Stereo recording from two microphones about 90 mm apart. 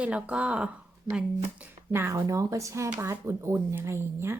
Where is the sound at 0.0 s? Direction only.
10° right (ahead or behind).